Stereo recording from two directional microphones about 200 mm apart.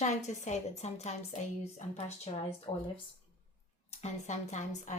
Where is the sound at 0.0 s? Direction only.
35° left (ahead or behind).